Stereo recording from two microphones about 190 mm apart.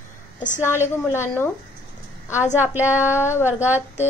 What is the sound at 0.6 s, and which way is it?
Speech, 15° left (ahead or behind).